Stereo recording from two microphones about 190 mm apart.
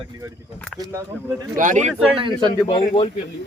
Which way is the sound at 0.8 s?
15° right (ahead or behind).